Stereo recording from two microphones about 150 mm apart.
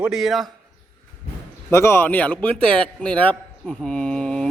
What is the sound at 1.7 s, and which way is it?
A man's voice, 15° left (ahead or behind).